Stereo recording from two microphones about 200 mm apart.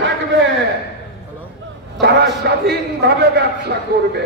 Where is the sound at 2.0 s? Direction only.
55° right (ahead or behind).